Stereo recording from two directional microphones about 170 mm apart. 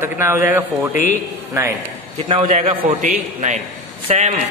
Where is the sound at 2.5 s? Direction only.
45° right (ahead or behind).